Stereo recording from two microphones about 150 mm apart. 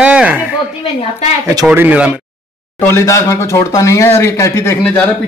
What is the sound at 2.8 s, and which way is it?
A man's voice, 20° left (ahead or behind).